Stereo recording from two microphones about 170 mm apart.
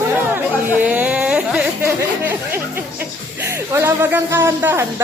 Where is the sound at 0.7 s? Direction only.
10° right (ahead or behind).